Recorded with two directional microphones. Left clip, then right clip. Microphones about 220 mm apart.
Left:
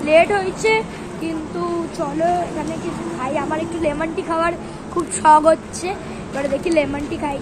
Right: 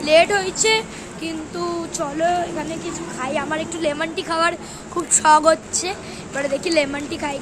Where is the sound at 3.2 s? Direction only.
15° right (ahead or behind).